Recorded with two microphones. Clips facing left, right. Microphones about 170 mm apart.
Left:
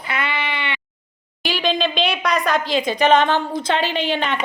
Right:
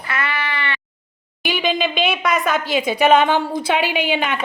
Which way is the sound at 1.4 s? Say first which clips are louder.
Even; 5° right (ahead or behind).